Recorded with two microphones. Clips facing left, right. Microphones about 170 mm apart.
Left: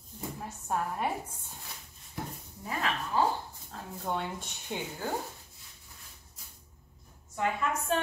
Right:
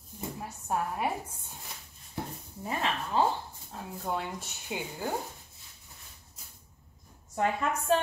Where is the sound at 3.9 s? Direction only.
Centre (ahead or behind).